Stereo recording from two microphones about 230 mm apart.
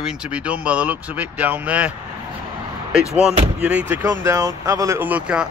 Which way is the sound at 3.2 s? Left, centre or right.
Centre.